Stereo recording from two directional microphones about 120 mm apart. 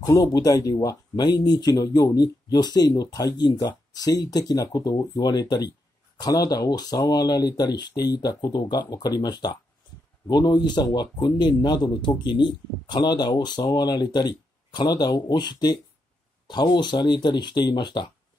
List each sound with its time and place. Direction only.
0.0 s speech: 30° left (ahead or behind)